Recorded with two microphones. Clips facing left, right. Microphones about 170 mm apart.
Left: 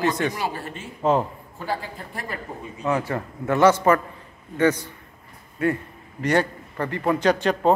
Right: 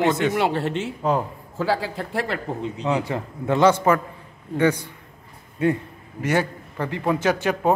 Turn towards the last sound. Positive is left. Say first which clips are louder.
# left 1 dB
turn(degrees=-5)  # may be behind; listen again after turning